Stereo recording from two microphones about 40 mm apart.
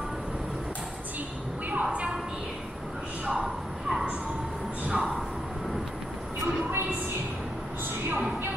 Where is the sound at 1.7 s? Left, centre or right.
Right.